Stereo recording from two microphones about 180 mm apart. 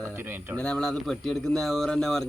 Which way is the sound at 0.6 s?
5° left (ahead or behind).